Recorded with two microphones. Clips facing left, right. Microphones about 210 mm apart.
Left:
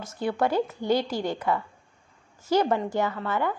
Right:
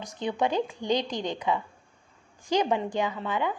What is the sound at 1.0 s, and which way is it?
Speech, 5° left (ahead or behind).